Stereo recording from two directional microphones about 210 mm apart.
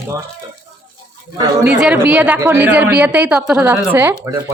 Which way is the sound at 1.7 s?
5° right (ahead or behind).